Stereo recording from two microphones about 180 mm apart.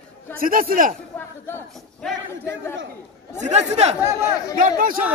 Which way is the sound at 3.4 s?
40° right (ahead or behind).